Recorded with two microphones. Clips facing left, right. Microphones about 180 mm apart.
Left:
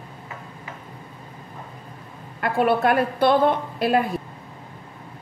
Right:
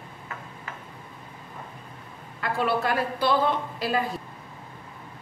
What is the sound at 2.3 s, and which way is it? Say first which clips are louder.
A woman's voice: left 6 dB; 55° left (ahead or behind).